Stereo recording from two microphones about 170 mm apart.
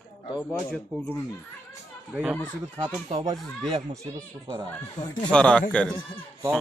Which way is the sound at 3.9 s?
20° right (ahead or behind).